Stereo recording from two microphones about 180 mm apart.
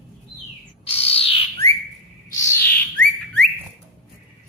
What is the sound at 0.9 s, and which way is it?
Bird, 35° left (ahead or behind).